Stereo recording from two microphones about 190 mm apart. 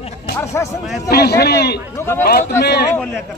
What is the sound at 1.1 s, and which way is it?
Speech, 55° left (ahead or behind).